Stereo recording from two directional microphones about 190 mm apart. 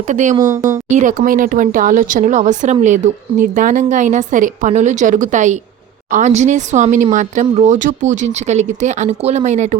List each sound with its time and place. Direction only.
0.1 s speech: 40° right (ahead or behind)
0.3 s a woman's voice: 20° right (ahead or behind)
0.9 s speech: 40° right (ahead or behind)